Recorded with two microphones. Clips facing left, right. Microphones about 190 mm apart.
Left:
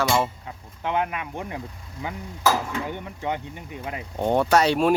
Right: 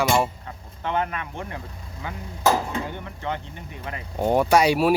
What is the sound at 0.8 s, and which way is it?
Speech, 10° left (ahead or behind).